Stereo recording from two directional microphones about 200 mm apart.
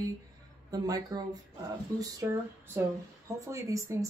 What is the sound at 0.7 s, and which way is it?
A woman's voice, 20° right (ahead or behind).